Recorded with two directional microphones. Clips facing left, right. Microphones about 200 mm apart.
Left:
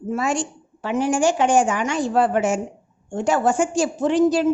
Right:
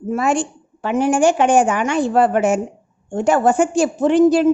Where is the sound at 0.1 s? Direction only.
55° right (ahead or behind).